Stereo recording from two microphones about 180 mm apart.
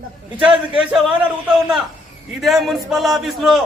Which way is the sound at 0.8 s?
Centre (ahead or behind).